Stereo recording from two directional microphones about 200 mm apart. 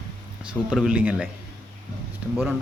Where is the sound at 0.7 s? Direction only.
5° right (ahead or behind).